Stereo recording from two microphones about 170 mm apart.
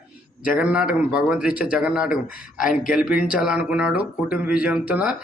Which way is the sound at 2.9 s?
5° right (ahead or behind).